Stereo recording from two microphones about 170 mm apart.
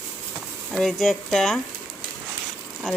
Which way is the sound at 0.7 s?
5° left (ahead or behind).